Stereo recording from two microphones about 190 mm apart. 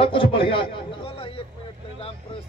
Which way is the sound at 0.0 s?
30° left (ahead or behind).